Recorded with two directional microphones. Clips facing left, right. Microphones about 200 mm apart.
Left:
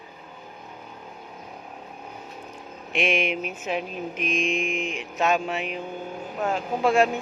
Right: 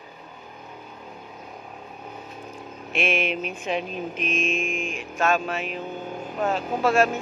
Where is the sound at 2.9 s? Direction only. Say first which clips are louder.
Left 1 dB; 15° left (ahead or behind).